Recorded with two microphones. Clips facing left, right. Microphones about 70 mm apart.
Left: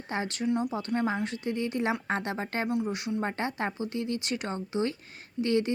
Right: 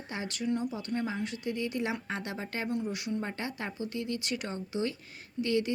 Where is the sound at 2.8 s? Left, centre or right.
Left.